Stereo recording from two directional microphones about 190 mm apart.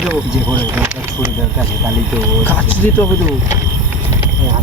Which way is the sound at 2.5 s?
10° left (ahead or behind).